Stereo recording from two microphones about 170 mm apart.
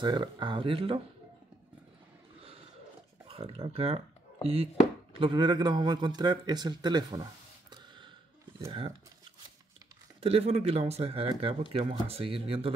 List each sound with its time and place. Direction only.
0.0 s speech: 25° right (ahead or behind)
3.3 s speech: 35° right (ahead or behind)
10.2 s speech: 35° right (ahead or behind)